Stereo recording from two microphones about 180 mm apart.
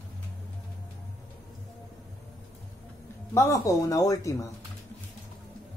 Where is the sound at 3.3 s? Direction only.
15° left (ahead or behind).